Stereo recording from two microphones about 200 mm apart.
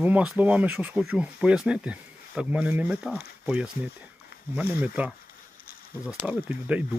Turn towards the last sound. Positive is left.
turn(degrees=-5)  # may be behind; listen again after turning